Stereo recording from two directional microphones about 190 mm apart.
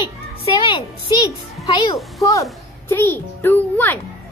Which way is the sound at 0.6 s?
25° left (ahead or behind).